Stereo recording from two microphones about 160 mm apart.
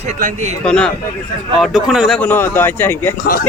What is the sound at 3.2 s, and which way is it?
Speech, 65° left (ahead or behind).